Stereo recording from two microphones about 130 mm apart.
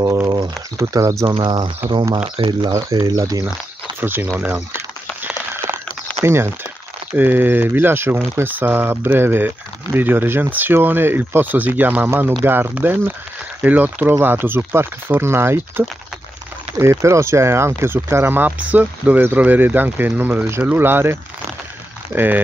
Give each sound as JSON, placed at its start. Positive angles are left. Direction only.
{"t": 0.7, "sound": "speech", "side_deg": -25}
{"t": 2.2, "sound": "speech", "side_deg": -45}
{"t": 2.6, "sound": "speech", "side_deg": -25}
{"t": 4.0, "sound": "speech", "side_deg": -15}
{"t": 6.2, "sound": "speech", "side_deg": -20}